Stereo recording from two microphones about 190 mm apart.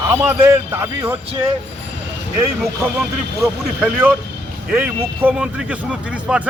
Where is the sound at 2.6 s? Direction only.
5° right (ahead or behind).